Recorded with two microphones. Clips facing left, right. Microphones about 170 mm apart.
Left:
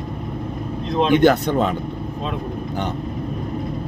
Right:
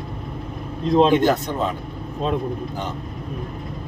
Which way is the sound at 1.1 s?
70° left (ahead or behind).